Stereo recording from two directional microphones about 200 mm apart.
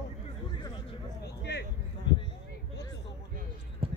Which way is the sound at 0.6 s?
20° left (ahead or behind).